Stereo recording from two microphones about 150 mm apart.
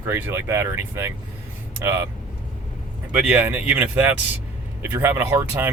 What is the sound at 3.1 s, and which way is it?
Speech, 5° right (ahead or behind).